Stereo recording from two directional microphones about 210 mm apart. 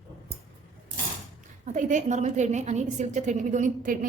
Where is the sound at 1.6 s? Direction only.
35° right (ahead or behind).